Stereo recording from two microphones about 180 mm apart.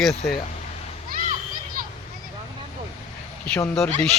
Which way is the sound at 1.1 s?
50° right (ahead or behind).